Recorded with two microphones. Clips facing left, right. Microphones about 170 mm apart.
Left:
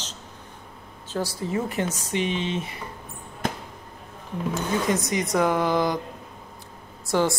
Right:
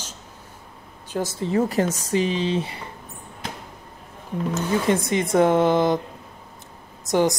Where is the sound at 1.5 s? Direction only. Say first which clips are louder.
Right 7 dB; 40° right (ahead or behind).